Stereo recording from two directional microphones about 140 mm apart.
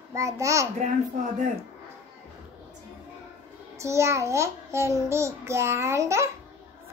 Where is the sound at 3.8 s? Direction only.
20° right (ahead or behind).